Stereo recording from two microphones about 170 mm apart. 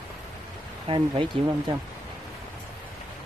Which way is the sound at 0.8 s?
30° right (ahead or behind).